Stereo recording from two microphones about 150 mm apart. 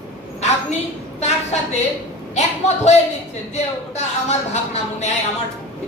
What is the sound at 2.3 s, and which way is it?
A woman's voice, 50° left (ahead or behind).